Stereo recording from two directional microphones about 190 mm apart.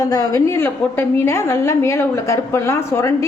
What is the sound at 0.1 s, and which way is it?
A woman's voice, 15° left (ahead or behind).